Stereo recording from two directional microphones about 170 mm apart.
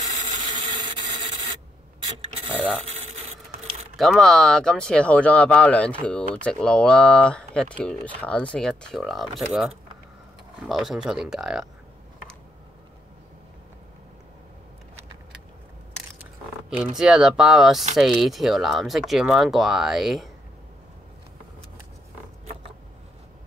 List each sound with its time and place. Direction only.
0.1 s wood: 45° right (ahead or behind)
0.5 s wood: 25° right (ahead or behind)
2.5 s speech: 5° left (ahead or behind)
3.9 s speech: centre (ahead or behind)
16.7 s speech: 5° right (ahead or behind)